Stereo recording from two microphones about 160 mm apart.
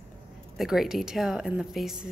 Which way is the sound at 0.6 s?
Centre (ahead or behind).